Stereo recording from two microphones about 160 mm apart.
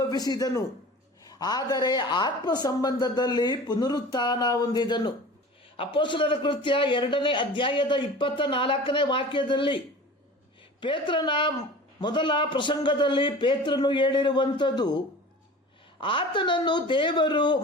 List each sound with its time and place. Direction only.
0.0 s a man's voice: 25° left (ahead or behind)
16.0 s speech: 30° left (ahead or behind)